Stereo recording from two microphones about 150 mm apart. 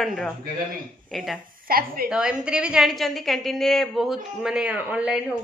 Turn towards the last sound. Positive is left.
turn(degrees=-5)  # may be behind; listen again after turning